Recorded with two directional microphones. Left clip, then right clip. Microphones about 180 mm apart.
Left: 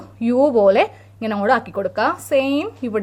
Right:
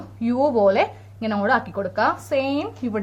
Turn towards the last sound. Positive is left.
turn(degrees=40)  # may be behind; listen again after turning